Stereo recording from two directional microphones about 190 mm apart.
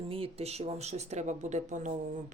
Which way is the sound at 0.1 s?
30° right (ahead or behind).